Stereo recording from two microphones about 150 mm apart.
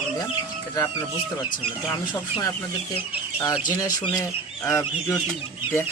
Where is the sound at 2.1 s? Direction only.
30° left (ahead or behind).